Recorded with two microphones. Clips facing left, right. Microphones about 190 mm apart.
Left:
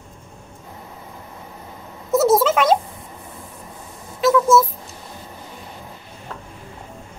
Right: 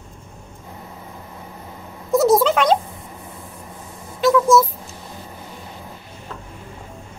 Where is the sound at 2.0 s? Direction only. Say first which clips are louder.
Right 1 dB; centre (ahead or behind).